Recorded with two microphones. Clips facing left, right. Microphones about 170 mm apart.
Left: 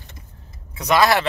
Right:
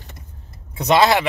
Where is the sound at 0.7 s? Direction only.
25° right (ahead or behind).